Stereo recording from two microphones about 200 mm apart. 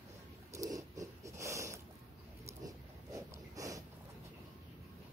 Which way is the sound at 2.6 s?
15° right (ahead or behind).